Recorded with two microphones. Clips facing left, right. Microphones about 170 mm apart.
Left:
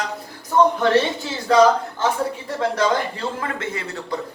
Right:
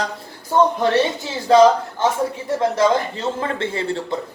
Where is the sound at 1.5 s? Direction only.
25° right (ahead or behind).